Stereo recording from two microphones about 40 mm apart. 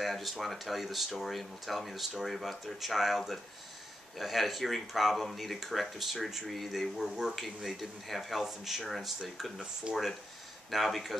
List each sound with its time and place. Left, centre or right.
0.0 s speech: centre
9.9 s speech: centre
10.7 s speech: centre